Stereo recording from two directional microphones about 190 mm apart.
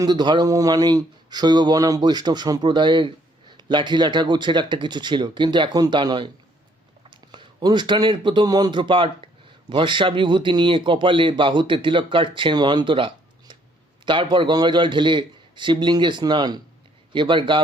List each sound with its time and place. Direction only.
0.0 s speech: 20° right (ahead or behind)